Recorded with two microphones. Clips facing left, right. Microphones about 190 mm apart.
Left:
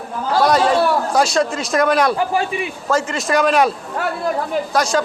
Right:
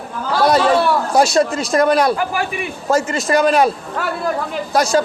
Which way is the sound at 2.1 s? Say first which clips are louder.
Left 2 dB; 25° left (ahead or behind).